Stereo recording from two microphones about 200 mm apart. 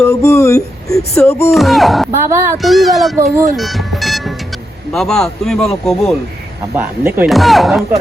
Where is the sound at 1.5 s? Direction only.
Centre (ahead or behind).